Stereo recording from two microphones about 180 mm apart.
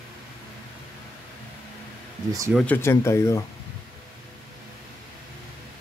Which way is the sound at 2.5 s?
10° left (ahead or behind).